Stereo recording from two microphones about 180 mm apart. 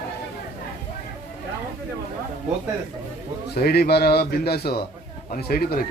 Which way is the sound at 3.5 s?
60° left (ahead or behind).